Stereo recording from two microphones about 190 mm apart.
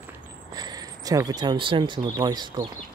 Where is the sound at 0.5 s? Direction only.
20° right (ahead or behind).